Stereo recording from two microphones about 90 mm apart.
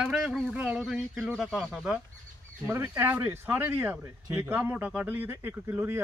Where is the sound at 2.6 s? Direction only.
30° right (ahead or behind).